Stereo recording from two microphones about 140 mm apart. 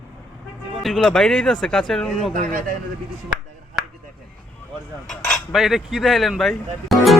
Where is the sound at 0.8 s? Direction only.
5° left (ahead or behind).